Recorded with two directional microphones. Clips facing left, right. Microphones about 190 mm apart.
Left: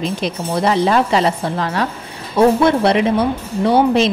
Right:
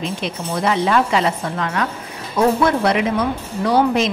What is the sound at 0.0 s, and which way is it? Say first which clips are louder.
A woman's voice: left 4 dB; 35° left (ahead or behind).